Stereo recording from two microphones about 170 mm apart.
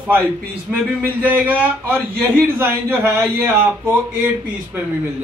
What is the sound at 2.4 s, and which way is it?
A man's voice, 15° right (ahead or behind).